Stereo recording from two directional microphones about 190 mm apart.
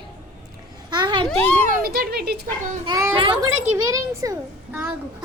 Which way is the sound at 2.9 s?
20° right (ahead or behind).